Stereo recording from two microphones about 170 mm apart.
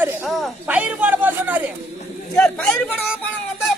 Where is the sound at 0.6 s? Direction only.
10° right (ahead or behind).